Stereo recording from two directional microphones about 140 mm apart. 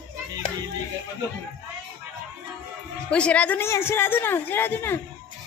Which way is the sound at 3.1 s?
10° left (ahead or behind).